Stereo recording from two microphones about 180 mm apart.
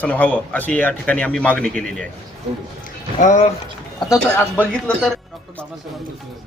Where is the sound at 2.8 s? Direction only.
45° left (ahead or behind).